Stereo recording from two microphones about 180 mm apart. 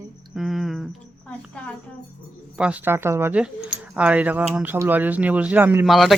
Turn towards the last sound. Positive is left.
turn(degrees=0)  # may be behind; listen again after turning